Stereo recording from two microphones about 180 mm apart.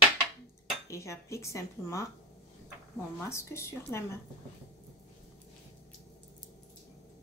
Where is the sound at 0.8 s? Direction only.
15° left (ahead or behind).